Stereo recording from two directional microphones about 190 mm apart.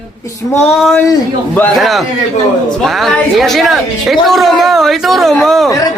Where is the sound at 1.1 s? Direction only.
10° left (ahead or behind).